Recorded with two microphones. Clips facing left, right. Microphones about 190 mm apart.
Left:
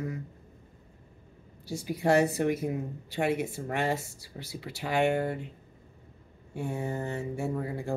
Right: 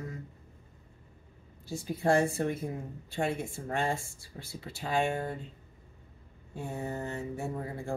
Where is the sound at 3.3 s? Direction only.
70° left (ahead or behind).